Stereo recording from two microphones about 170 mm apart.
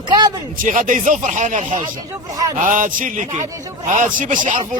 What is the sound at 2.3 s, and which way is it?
Speech, 20° right (ahead or behind).